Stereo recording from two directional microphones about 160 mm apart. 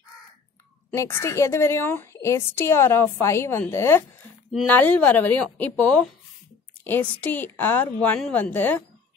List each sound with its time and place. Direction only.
0.9 s a woman's voice: 15° left (ahead or behind)